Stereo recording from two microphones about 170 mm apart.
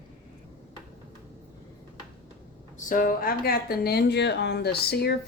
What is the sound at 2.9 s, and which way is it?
Speech, 55° left (ahead or behind).